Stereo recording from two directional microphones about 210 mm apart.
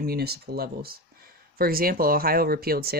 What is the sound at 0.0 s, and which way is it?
Speech, 50° right (ahead or behind).